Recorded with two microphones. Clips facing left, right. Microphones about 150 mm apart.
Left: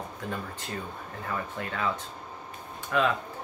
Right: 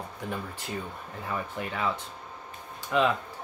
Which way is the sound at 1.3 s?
15° right (ahead or behind).